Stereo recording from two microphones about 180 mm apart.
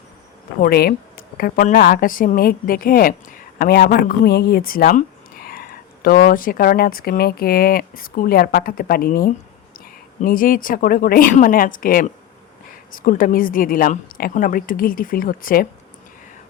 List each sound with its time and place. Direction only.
0.6 s a woman's voice: 60° left (ahead or behind)